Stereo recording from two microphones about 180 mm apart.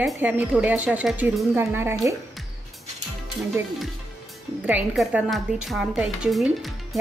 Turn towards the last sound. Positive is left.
turn(degrees=0)  # may be behind; listen again after turning